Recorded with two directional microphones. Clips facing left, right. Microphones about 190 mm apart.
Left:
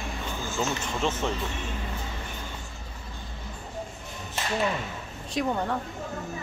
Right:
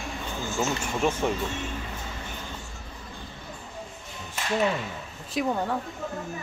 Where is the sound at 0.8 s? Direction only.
10° right (ahead or behind).